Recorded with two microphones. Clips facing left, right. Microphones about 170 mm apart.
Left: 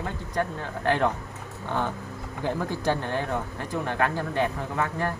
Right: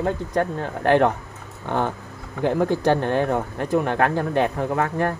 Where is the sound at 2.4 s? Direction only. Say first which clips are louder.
Right 7 dB; 60° right (ahead or behind).